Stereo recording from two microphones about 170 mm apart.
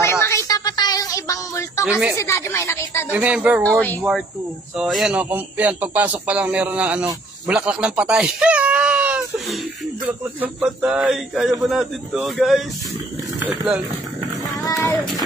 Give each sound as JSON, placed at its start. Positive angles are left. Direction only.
{"t": 0.0, "sound": "a sound", "side_deg": 15}
{"t": 1.9, "sound": "speech", "side_deg": -5}
{"t": 2.1, "sound": "a woman's voice", "side_deg": 15}
{"t": 3.1, "sound": "a man's voice", "side_deg": -5}
{"t": 4.7, "sound": "a man's voice", "side_deg": 0}
{"t": 14.6, "sound": "music", "side_deg": 15}